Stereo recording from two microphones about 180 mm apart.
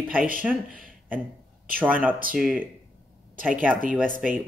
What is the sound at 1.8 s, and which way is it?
Speech, 10° right (ahead or behind).